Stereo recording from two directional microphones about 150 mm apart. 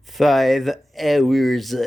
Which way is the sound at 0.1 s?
Centre (ahead or behind).